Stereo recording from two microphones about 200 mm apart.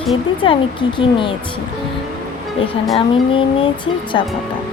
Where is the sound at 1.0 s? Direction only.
25° left (ahead or behind).